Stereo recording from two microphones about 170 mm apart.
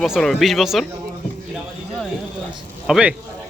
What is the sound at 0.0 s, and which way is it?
Speech, centre (ahead or behind).